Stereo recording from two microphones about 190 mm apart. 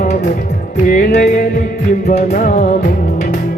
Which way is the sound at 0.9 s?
45° left (ahead or behind).